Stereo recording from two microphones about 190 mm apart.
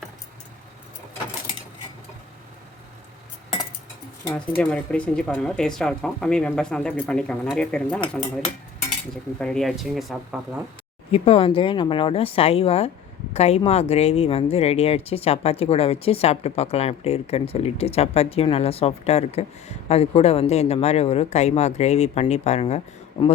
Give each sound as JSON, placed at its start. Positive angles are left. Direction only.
{"t": 4.3, "sound": "speech", "side_deg": 5}
{"t": 9.4, "sound": "speech", "side_deg": 5}
{"t": 11.1, "sound": "speech", "side_deg": 30}
{"t": 23.2, "sound": "speech", "side_deg": 25}